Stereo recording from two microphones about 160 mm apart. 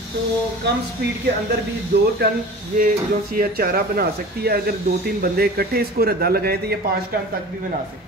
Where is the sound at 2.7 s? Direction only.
60° right (ahead or behind); by 6.5 s 75° right (ahead or behind).